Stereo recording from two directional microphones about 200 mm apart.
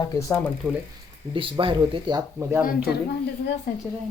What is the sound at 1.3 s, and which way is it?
Speech, 25° right (ahead or behind).